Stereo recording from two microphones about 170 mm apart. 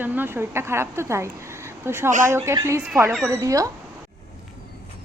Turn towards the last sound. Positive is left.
turn(degrees=-20)  # may be behind; listen again after turning